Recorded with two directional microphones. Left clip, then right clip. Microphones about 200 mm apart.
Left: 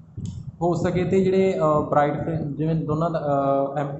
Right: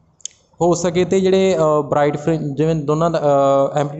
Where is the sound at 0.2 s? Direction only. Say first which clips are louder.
Right 7 dB; 55° right (ahead or behind).